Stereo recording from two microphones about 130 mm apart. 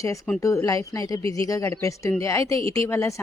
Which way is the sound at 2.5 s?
45° right (ahead or behind).